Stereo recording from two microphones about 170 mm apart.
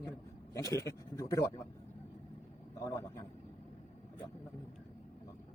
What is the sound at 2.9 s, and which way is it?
Vehicle, 15° left (ahead or behind).